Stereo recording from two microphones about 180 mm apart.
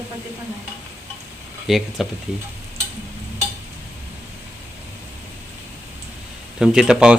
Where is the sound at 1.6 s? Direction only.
Centre (ahead or behind).